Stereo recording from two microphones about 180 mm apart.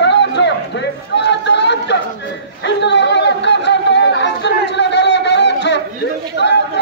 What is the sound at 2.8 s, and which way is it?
Chatter, 75° left (ahead or behind).